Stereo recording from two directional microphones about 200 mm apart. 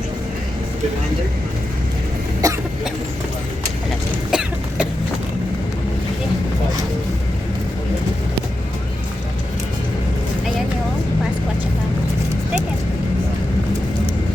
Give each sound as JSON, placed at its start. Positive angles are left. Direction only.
{"t": 2.4, "sound": "cough", "side_deg": -20}
{"t": 4.3, "sound": "cough", "side_deg": -5}